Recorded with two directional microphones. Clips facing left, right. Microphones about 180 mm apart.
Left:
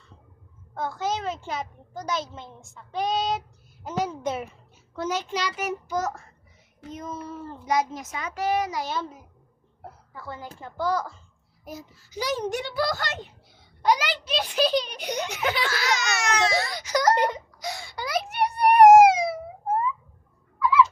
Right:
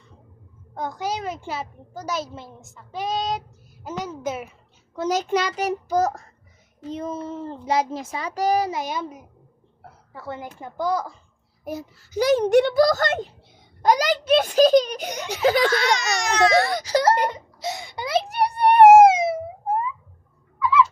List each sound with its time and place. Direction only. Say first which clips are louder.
0.7 s a child's voice: even; 15° right (ahead or behind)
5.3 s a child's voice: right 6 dB; 45° right (ahead or behind)
8.7 s a child's voice: right 2 dB; 15° right (ahead or behind)
11.6 s a child's voice: right 8 dB; 60° right (ahead or behind)
12.7 s a child's voice: right 9 dB; 40° right (ahead or behind)
15.7 s speech: right 5 dB; centre (ahead or behind)
16.8 s a child's voice: right 3 dB; 30° right (ahead or behind)
17.2 s a sound: right 1 dB; 20° right (ahead or behind)
18.3 s a sound: right 1 dB; 35° right (ahead or behind); by 19.9 s 15° right (ahead or behind)
20.6 s fowl: right 1 dB; 5° left (ahead or behind)